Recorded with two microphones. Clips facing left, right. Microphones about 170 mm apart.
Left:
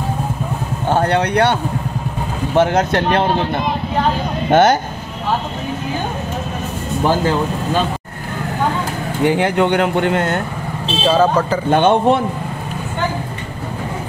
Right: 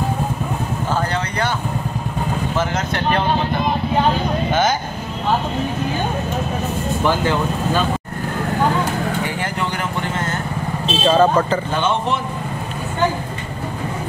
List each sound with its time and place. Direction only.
0.8 s a sound: 70° left (ahead or behind)
2.5 s speech: 65° left (ahead or behind)
4.5 s speech: 65° left (ahead or behind)
9.2 s speech: 70° left (ahead or behind)
11.0 s speech: 10° left (ahead or behind)
11.7 s speech: 60° left (ahead or behind)